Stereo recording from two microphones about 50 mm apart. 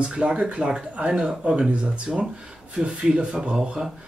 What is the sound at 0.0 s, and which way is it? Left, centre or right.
Speech, centre.